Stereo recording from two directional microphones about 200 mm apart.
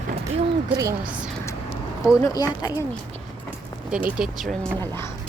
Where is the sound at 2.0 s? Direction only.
20° left (ahead or behind).